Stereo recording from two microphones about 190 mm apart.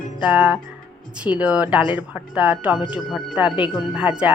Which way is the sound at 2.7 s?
25° left (ahead or behind).